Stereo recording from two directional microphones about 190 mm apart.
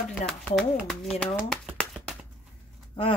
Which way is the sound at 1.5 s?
Centre (ahead or behind).